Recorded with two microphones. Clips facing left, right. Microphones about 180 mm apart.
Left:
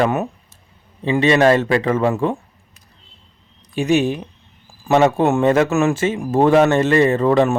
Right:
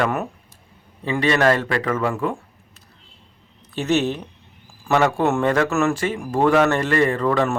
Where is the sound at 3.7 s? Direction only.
15° left (ahead or behind).